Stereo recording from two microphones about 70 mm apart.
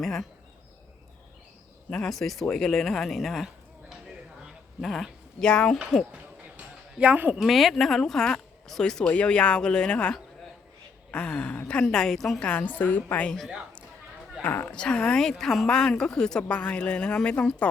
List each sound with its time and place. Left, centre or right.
0.0 s speech: centre
1.9 s a woman's voice: centre
7.0 s speech: centre
7.3 s a woman's voice: centre
12.4 s a woman's voice: centre
14.4 s a woman's voice: left
14.7 s a woman's voice: centre